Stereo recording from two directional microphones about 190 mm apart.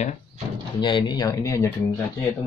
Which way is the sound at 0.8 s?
25° left (ahead or behind).